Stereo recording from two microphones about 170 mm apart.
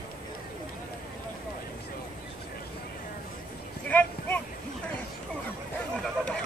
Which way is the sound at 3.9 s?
10° left (ahead or behind).